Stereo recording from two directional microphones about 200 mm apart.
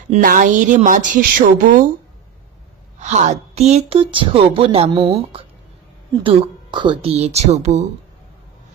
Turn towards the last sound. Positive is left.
turn(degrees=-35)  # may be behind; listen again after turning